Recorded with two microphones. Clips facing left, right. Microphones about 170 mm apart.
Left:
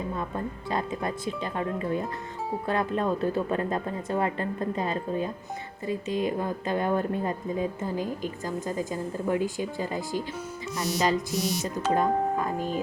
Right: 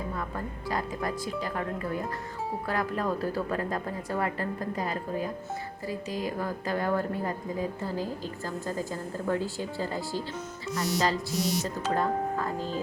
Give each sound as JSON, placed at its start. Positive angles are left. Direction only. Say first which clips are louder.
{"t": 0.2, "sound": "a woman's voice", "louder": "left 3 dB", "side_deg": 25}